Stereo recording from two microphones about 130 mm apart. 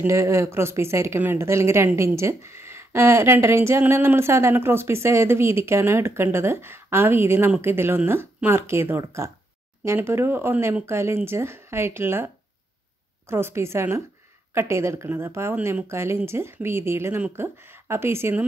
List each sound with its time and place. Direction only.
0.0 s speech: 20° right (ahead or behind)
13.3 s speech: 20° right (ahead or behind)